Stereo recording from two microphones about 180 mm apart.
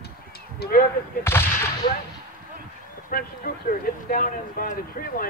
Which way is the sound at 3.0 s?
55° left (ahead or behind).